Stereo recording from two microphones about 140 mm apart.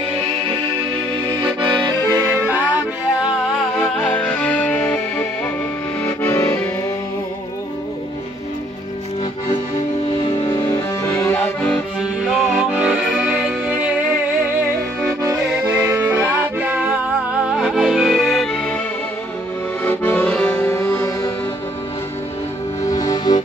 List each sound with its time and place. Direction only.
1.4 s accordion: 35° right (ahead or behind)
2.0 s music: 15° right (ahead or behind)
3.9 s music: 10° left (ahead or behind)
6.0 s accordion: 20° left (ahead or behind)
10.3 s music: 30° left (ahead or behind)
11.1 s accordion: 20° left (ahead or behind)
12.0 s music: 5° right (ahead or behind)
15.5 s music: 10° right (ahead or behind)
19.8 s accordion: 15° left (ahead or behind)
22.8 s music: 30° left (ahead or behind)